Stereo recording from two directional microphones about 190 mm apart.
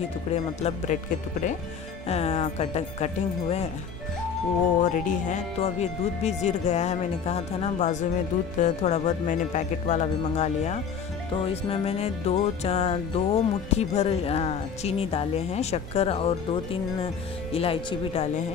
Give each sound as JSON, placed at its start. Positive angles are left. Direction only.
{"t": 0.3, "sound": "music", "side_deg": 35}
{"t": 2.0, "sound": "music", "side_deg": 35}
{"t": 4.8, "sound": "music", "side_deg": 40}